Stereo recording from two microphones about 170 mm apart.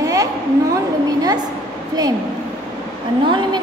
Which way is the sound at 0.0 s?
20° right (ahead or behind).